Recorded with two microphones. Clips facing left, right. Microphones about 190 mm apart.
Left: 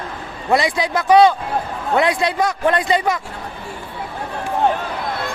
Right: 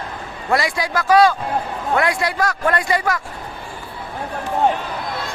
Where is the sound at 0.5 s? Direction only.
20° left (ahead or behind).